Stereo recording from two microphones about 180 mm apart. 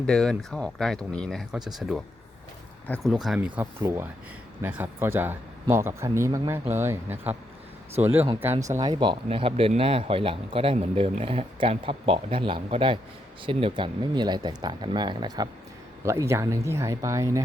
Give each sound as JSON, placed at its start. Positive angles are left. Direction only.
{"t": 0.0, "sound": "speech", "side_deg": 5}